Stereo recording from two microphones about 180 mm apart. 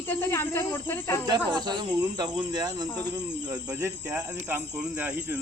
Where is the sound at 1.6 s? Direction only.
25° right (ahead or behind).